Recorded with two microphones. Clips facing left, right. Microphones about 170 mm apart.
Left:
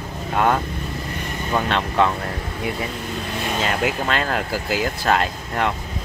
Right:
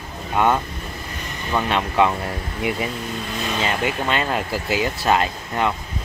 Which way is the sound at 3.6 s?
Centre (ahead or behind).